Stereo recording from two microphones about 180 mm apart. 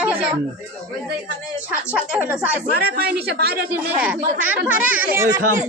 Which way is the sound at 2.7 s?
60° right (ahead or behind).